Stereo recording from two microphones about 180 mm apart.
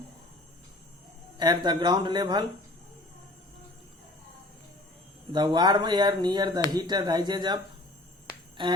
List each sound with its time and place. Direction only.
1.4 s speech: 25° right (ahead or behind)
5.3 s speech: 25° right (ahead or behind)